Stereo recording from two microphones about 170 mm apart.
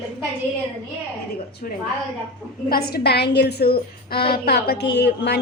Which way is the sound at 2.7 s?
65° left (ahead or behind).